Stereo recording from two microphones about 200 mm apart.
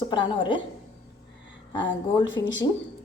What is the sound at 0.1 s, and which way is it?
Speech, 25° left (ahead or behind).